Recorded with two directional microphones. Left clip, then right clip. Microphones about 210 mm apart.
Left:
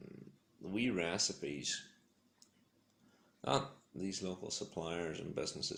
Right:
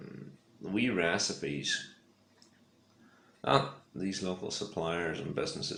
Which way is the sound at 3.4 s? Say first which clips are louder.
Right 8 dB; 40° left (ahead or behind).